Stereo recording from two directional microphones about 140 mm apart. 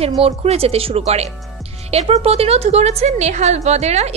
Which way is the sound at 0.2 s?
45° right (ahead or behind).